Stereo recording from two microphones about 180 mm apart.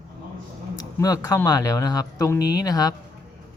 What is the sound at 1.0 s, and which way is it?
Speech, 20° left (ahead or behind).